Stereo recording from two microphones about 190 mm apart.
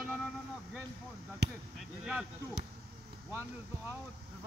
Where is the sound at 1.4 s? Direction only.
60° right (ahead or behind).